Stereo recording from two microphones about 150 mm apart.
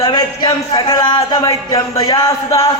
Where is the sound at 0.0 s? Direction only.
25° left (ahead or behind).